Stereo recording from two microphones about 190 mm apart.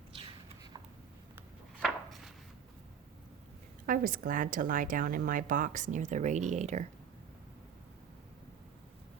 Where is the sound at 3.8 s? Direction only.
45° right (ahead or behind).